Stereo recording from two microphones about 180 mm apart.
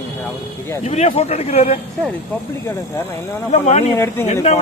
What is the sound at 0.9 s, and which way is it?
Speech, 35° left (ahead or behind).